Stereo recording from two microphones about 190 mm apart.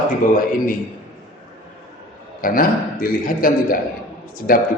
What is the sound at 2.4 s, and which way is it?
A man's voice, 50° left (ahead or behind).